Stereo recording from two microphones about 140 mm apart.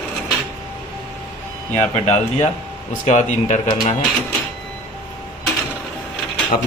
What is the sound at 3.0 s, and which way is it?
Speech, 60° left (ahead or behind).